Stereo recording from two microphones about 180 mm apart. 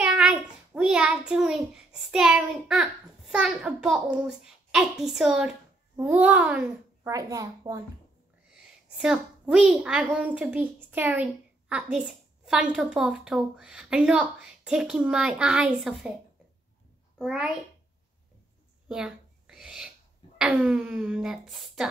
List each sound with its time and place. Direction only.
0.0 s a child's voice: 5° right (ahead or behind)
7.0 s a child's voice: 20° right (ahead or behind)
8.5 s a woman's voice: 5° right (ahead or behind)
17.2 s a child's voice: 5° right (ahead or behind)
18.9 s a sound: 5° right (ahead or behind)
20.3 s a woman's voice: 5° right (ahead or behind)